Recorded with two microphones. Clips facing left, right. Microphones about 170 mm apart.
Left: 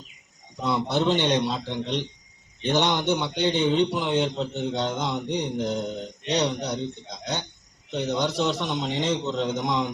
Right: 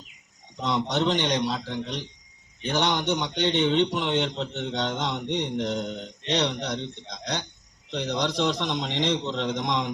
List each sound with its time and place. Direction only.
0.5 s a man's voice: 5° left (ahead or behind)